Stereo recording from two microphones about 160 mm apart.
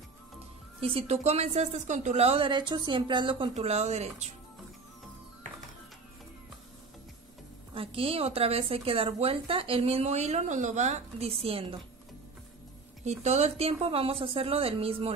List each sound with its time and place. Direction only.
0.7 s a woman's voice: 35° right (ahead or behind)
3.5 s speech: 45° right (ahead or behind)
7.7 s a woman's voice: 35° right (ahead or behind)
13.0 s a woman's voice: 45° right (ahead or behind)